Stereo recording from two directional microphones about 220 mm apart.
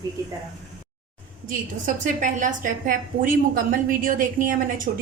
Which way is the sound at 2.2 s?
35° right (ahead or behind).